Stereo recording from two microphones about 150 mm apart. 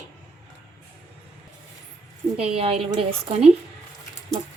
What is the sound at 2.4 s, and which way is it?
A woman's voice, 40° right (ahead or behind).